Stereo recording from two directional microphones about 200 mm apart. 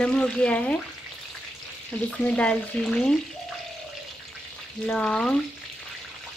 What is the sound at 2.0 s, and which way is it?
Frying, 5° left (ahead or behind).